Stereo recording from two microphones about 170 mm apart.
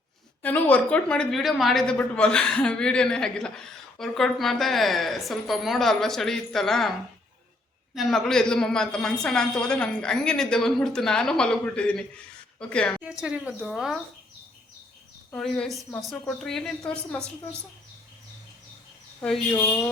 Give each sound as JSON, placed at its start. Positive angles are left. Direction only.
{"t": 0.4, "sound": "a woman's voice", "side_deg": 10}
{"t": 7.9, "sound": "a woman's voice", "side_deg": 0}
{"t": 13.1, "sound": "a woman's voice", "side_deg": -5}
{"t": 15.3, "sound": "a woman's voice", "side_deg": 5}
{"t": 19.5, "sound": "speech", "side_deg": 15}